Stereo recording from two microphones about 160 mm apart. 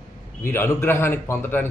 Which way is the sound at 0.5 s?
15° left (ahead or behind).